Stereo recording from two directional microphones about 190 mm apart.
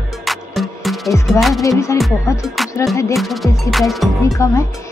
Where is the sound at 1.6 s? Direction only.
15° left (ahead or behind).